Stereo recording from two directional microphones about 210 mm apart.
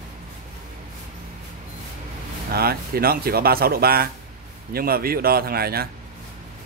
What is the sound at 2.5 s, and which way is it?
Speech, 45° right (ahead or behind).